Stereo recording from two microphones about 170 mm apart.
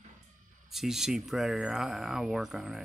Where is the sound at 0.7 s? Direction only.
Centre (ahead or behind).